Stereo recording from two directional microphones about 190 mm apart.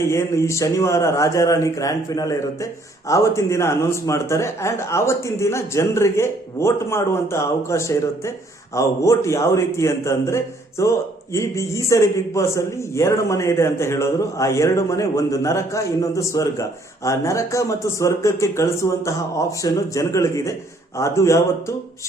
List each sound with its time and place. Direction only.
0.0 s a man's voice: 15° left (ahead or behind)